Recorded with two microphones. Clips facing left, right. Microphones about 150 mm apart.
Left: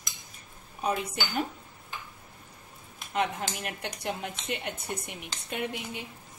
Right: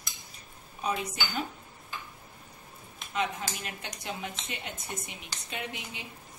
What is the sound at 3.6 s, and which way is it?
Speech, 60° left (ahead or behind).